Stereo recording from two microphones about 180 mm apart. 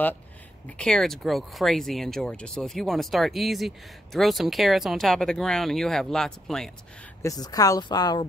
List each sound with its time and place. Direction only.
0.7 s speech: 5° left (ahead or behind)
7.2 s speech: 20° left (ahead or behind)